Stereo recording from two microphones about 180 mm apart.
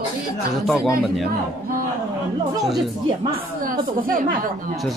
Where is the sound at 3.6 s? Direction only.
50° right (ahead or behind).